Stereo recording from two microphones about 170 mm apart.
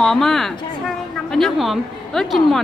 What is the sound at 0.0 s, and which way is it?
A woman's voice, centre (ahead or behind).